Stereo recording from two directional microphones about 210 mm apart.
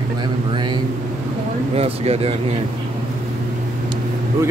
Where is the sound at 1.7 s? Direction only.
30° right (ahead or behind).